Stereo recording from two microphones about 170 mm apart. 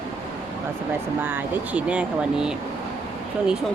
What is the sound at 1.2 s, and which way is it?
Speech, 10° right (ahead or behind).